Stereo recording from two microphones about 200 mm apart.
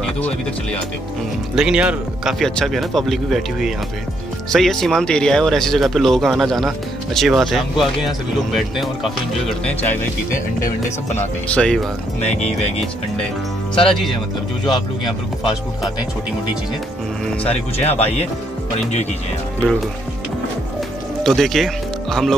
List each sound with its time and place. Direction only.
1.5 s speech: 5° right (ahead or behind)
10.3 s speech: 35° left (ahead or behind)
11.4 s speech: 5° left (ahead or behind)
14.7 s speech: 20° left (ahead or behind)
17.4 s speech: 30° left (ahead or behind)
21.2 s speech: centre (ahead or behind)